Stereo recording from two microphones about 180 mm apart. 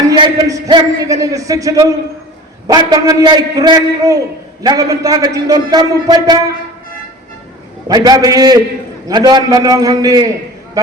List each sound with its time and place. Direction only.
0.1 s a man's voice: 25° right (ahead or behind)
7.9 s a man's voice: 20° right (ahead or behind)